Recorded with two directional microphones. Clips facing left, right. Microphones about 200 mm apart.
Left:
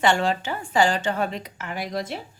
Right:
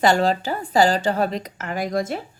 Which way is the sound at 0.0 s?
40° right (ahead or behind).